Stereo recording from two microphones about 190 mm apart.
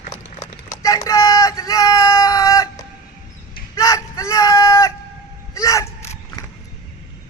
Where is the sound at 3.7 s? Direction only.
15° left (ahead or behind).